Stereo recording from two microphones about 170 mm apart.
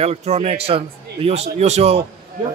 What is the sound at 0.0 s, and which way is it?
A man's voice, 40° right (ahead or behind).